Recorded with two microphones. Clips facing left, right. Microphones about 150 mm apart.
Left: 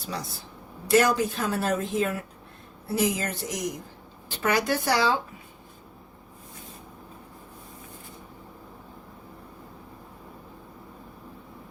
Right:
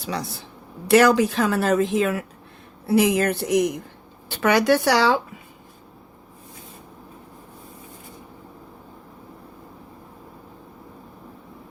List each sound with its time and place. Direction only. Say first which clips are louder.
0.0 s speech: right 5 dB; 75° right (ahead or behind); by 2.2 s 90° right
2.8 s speech: right 8 dB; 70° right (ahead or behind)
4.3 s speech: right 7 dB; 80° right